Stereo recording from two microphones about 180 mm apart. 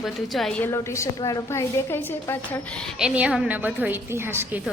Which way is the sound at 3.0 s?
5° right (ahead or behind).